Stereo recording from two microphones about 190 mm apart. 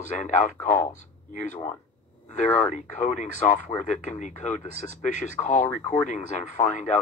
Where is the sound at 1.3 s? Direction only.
40° left (ahead or behind).